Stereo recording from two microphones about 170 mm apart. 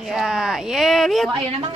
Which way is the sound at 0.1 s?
Centre (ahead or behind).